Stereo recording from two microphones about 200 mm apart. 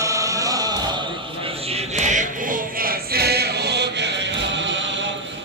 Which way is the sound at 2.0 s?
35° right (ahead or behind).